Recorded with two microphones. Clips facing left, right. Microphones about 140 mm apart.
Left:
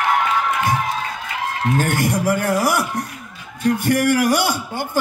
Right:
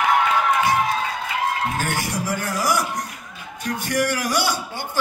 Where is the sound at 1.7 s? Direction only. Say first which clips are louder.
Left 6 dB; 50° left (ahead or behind).